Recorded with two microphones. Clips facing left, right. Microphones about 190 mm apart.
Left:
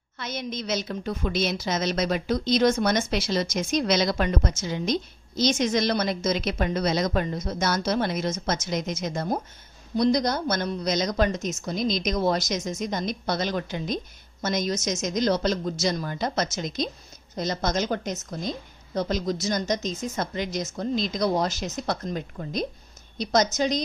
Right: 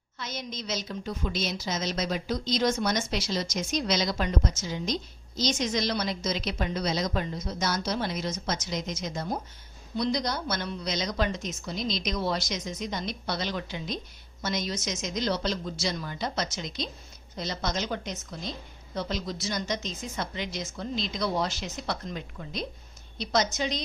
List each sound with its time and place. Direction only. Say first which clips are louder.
0.2 s a woman's voice: left 5 dB; 60° left (ahead or behind); by 23.8 s 40° left (ahead or behind)